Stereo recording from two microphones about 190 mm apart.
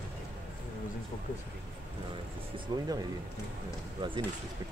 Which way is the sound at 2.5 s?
20° right (ahead or behind).